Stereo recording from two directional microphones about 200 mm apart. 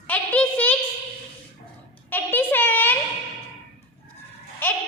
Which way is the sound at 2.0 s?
10° left (ahead or behind).